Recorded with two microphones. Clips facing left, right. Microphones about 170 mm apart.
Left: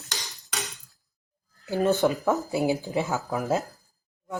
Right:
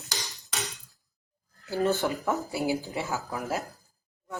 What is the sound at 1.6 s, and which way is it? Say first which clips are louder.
Speech: left 4 dB; 20° left (ahead or behind).